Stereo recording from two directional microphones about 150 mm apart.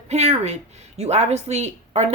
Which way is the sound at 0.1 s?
45° right (ahead or behind).